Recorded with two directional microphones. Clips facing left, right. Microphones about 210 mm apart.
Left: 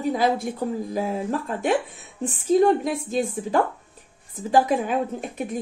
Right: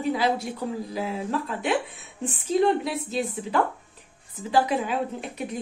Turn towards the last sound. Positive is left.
turn(degrees=50)  # may be behind; listen again after turning